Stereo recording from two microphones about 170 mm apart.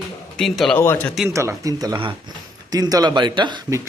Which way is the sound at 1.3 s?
15° right (ahead or behind).